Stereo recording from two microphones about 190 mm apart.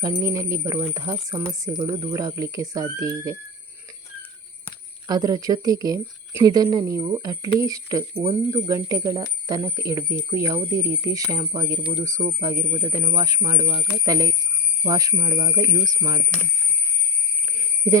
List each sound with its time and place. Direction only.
0.0 s speech: 15° right (ahead or behind)
5.0 s speech: 20° right (ahead or behind)